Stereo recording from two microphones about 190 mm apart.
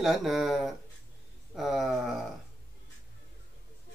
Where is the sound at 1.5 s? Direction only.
Centre (ahead or behind).